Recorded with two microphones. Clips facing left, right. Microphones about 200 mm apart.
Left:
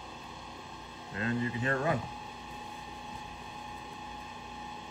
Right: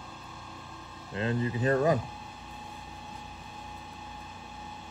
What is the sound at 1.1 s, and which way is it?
Speech, 30° right (ahead or behind).